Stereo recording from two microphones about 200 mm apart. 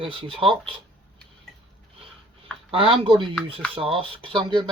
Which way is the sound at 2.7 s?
25° right (ahead or behind).